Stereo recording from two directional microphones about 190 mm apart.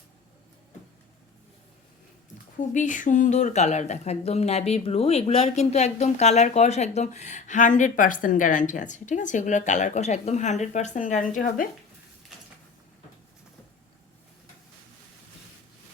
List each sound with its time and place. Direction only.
2.7 s speech: 40° left (ahead or behind)